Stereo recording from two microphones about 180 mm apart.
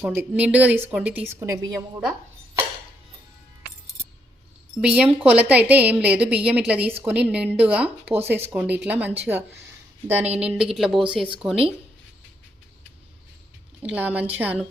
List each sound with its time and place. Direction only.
0.0 s a woman's voice: 10° right (ahead or behind)
4.8 s a woman's voice: 5° right (ahead or behind)
13.8 s a woman's voice: 10° right (ahead or behind)